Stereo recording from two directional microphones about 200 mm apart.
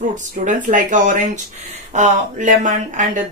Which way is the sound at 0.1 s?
40° right (ahead or behind).